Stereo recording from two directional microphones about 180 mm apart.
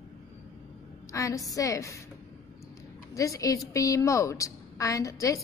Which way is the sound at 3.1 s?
20° left (ahead or behind).